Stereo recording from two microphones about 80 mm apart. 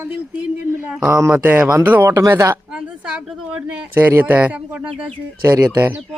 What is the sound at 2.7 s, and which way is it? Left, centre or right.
Speech, centre.